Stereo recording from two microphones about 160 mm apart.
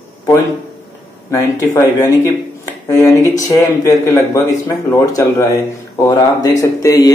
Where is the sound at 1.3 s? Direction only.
20° left (ahead or behind).